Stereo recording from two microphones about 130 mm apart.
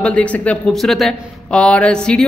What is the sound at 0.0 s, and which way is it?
Speech, 10° left (ahead or behind).